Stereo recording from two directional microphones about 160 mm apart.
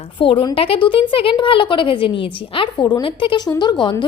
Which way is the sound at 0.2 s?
35° left (ahead or behind).